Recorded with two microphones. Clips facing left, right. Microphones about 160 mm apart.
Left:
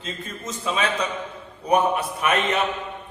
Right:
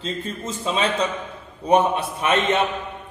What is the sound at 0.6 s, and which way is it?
A man's voice, 30° right (ahead or behind).